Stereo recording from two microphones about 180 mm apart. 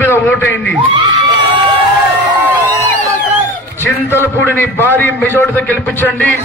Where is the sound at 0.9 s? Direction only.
25° right (ahead or behind).